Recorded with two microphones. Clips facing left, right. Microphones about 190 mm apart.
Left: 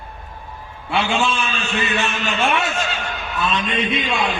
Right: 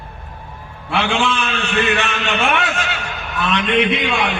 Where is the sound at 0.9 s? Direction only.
65° right (ahead or behind).